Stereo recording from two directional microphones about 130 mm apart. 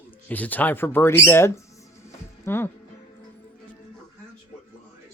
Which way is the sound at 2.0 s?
15° left (ahead or behind).